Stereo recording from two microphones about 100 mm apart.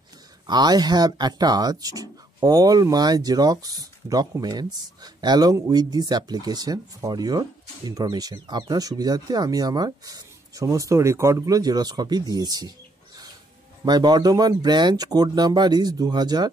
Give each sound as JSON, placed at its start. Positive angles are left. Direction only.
{"t": 0.5, "sound": "speech", "side_deg": -45}
{"t": 13.8, "sound": "speech", "side_deg": -45}